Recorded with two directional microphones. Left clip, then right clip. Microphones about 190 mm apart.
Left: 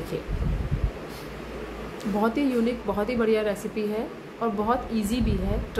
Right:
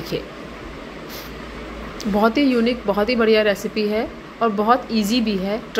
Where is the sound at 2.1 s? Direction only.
15° right (ahead or behind).